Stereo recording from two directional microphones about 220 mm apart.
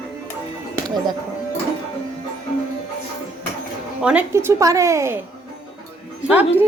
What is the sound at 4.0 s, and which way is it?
Speech, 5° right (ahead or behind).